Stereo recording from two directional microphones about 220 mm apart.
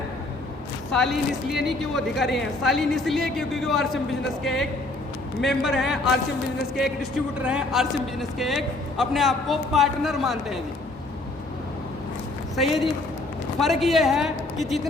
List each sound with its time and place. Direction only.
0.9 s a man's voice: centre (ahead or behind)
12.5 s a man's voice: centre (ahead or behind)